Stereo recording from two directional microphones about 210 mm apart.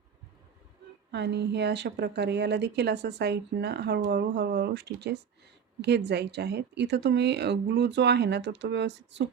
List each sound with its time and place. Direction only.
1.1 s speech: 55° right (ahead or behind)